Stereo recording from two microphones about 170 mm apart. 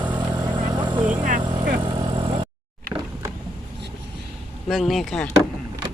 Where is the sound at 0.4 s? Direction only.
25° right (ahead or behind).